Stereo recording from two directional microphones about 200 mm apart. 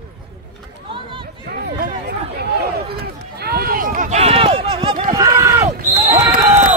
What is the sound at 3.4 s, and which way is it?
Run, 50° right (ahead or behind).